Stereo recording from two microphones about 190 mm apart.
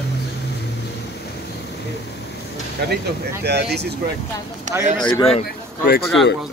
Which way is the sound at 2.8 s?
55° right (ahead or behind).